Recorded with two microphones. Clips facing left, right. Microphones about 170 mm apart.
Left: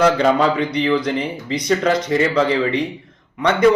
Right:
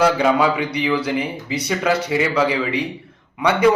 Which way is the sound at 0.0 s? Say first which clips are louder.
Left 1 dB; 10° right (ahead or behind).